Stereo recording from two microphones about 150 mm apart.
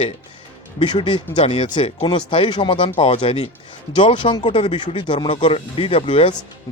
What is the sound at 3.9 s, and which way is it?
Speech, 30° left (ahead or behind).